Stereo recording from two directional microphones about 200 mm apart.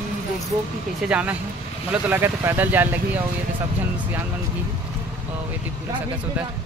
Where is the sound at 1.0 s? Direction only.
5° right (ahead or behind).